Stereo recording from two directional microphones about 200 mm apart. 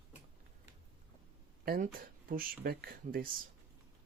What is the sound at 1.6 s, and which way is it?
Speech, 45° right (ahead or behind).